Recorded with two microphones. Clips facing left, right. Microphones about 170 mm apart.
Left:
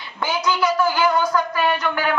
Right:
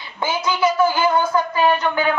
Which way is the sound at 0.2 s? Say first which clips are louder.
Right 1 dB; 25° right (ahead or behind).